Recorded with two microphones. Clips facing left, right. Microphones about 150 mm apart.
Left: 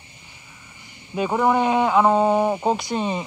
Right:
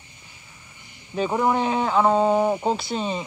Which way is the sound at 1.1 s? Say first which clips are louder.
Left 2 dB; 5° left (ahead or behind).